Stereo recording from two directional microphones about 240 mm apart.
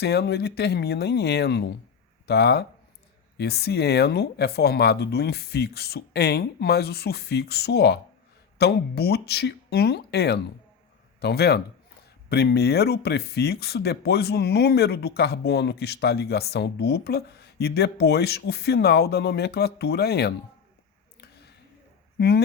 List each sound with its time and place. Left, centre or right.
0.0 s speech: left
22.2 s speech: left